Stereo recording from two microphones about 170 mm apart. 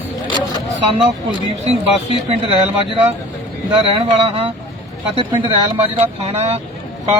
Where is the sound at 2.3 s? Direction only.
35° right (ahead or behind).